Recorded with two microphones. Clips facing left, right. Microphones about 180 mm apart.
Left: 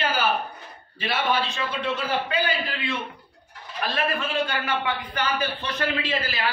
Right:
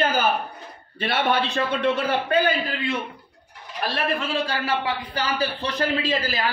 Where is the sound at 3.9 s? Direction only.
35° right (ahead or behind).